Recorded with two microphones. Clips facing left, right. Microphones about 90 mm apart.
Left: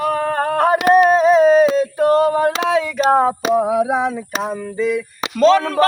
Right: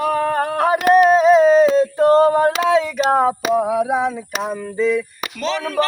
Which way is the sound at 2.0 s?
30° right (ahead or behind).